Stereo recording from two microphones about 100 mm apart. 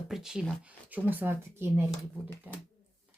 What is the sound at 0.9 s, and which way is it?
Speech, 20° right (ahead or behind).